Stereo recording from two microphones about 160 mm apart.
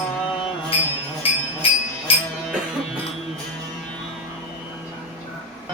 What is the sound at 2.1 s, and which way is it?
Music, 35° left (ahead or behind).